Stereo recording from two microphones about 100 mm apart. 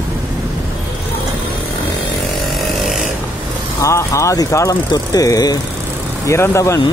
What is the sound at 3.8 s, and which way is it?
Speech, 30° left (ahead or behind).